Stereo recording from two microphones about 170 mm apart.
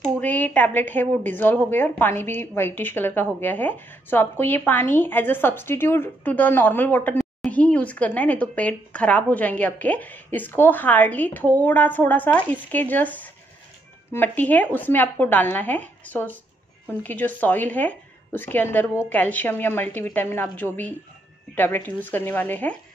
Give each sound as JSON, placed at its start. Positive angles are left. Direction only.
{"t": 0.2, "sound": "a woman's voice", "side_deg": 10}